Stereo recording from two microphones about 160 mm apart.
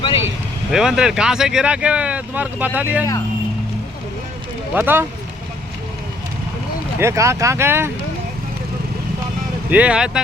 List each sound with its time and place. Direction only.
0.7 s speech: 5° right (ahead or behind)
4.7 s speech: 10° right (ahead or behind)
7.0 s speech: 20° right (ahead or behind)
9.6 s speech: 10° right (ahead or behind)